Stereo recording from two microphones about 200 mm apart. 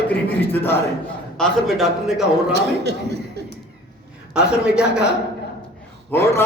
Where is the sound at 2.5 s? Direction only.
55° right (ahead or behind).